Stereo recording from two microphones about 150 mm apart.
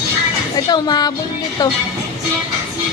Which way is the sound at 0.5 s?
25° left (ahead or behind).